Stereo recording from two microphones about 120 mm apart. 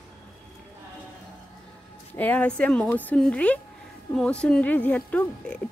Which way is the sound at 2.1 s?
15° left (ahead or behind).